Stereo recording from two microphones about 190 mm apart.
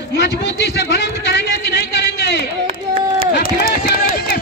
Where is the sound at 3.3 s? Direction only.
50° left (ahead or behind).